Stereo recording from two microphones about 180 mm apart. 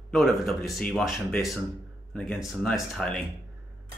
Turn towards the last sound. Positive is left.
turn(degrees=0)  # may be behind; listen again after turning